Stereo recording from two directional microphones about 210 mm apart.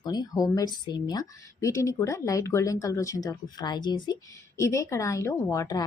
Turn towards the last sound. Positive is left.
turn(degrees=15)  # may be behind; listen again after turning